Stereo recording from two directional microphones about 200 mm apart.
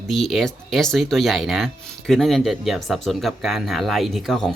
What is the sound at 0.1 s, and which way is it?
Speech, centre (ahead or behind).